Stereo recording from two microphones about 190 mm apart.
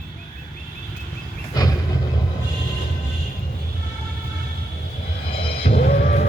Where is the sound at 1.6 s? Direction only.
20° left (ahead or behind).